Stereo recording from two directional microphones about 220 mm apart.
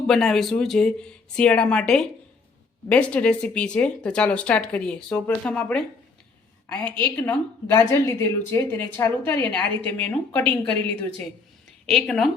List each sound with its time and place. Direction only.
0.1 s a woman's voice: centre (ahead or behind)
11.9 s speech: centre (ahead or behind)